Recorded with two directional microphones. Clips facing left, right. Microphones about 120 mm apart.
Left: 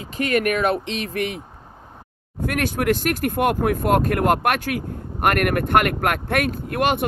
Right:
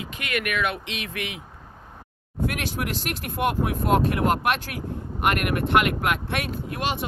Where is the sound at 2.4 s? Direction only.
50° left (ahead or behind).